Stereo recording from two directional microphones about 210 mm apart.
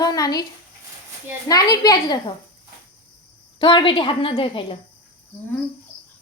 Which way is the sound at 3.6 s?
25° left (ahead or behind).